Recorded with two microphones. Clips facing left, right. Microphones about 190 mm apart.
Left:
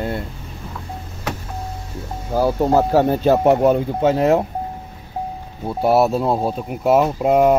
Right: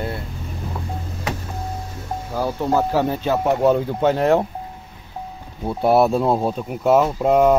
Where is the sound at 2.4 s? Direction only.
40° left (ahead or behind).